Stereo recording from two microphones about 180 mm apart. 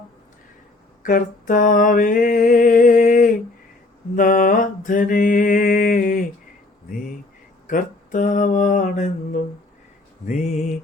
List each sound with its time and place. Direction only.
1.0 s a sound: 50° left (ahead or behind)
4.1 s mantra: 45° left (ahead or behind)
7.7 s mantra: 45° left (ahead or behind)